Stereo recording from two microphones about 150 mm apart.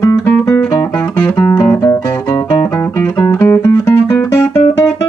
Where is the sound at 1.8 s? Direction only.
25° left (ahead or behind).